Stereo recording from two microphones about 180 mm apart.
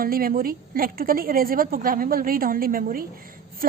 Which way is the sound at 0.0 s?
55° right (ahead or behind).